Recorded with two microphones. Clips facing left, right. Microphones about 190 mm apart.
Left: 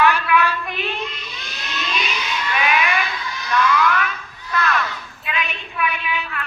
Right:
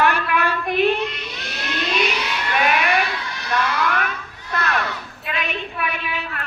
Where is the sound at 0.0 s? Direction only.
50° right (ahead or behind).